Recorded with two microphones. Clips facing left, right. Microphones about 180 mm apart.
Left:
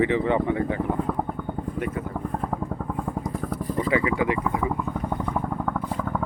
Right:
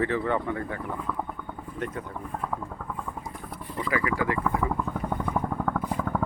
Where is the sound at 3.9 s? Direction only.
20° left (ahead or behind).